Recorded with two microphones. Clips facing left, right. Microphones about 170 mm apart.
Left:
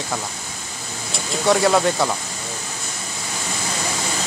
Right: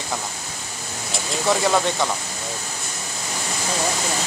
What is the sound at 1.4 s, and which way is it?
Speech, centre (ahead or behind).